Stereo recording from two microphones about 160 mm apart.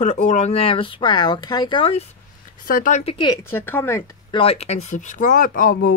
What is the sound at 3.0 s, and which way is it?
Speech, 30° left (ahead or behind).